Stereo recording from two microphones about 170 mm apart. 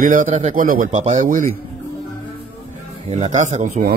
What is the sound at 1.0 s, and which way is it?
Speech, 45° right (ahead or behind).